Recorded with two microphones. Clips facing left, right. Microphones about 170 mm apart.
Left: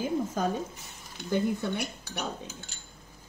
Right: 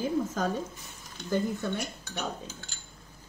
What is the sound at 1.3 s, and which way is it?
Speech, 15° left (ahead or behind).